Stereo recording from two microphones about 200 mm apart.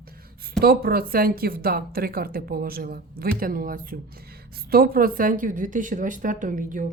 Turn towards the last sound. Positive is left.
turn(degrees=-40)  # may be behind; listen again after turning